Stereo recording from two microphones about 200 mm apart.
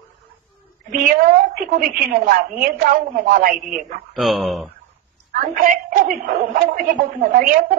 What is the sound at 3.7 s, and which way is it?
Speech, centre (ahead or behind).